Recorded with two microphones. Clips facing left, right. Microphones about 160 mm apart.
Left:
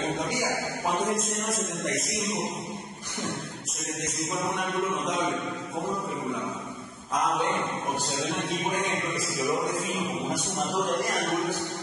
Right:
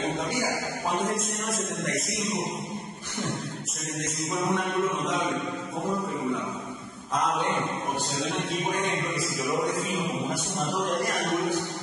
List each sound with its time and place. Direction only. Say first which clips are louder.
1.1 s a man's voice: left 1 dB; centre (ahead or behind)
4.5 s chant: right 4 dB; 25° right (ahead or behind)
8.2 s a man's voice: even; centre (ahead or behind)